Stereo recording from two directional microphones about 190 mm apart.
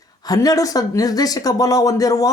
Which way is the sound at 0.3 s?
20° left (ahead or behind).